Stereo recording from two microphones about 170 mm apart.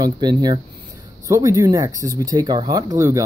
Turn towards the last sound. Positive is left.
turn(degrees=-15)  # may be behind; listen again after turning